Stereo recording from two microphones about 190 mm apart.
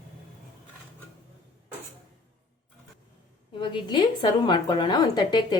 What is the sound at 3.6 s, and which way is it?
A woman's voice, 25° left (ahead or behind).